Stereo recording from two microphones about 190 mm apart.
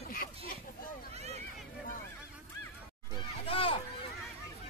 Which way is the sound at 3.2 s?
30° left (ahead or behind).